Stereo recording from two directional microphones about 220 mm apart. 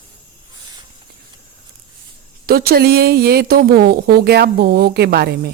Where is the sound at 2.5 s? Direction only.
45° right (ahead or behind).